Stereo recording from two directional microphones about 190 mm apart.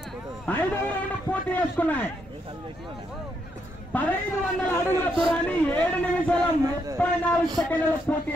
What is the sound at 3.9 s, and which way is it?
Speech, 10° left (ahead or behind).